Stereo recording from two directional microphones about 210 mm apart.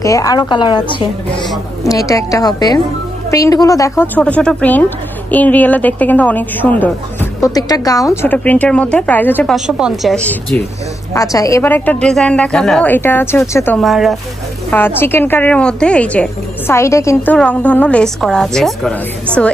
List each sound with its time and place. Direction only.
0.0 s a woman's voice: 15° left (ahead or behind)
11.1 s a woman's voice: 15° left (ahead or behind)
13.7 s speech: centre (ahead or behind)
14.7 s a woman's voice: 10° left (ahead or behind)